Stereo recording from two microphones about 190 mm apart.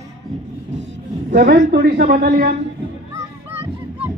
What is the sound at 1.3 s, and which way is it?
A woman's voice, 55° right (ahead or behind).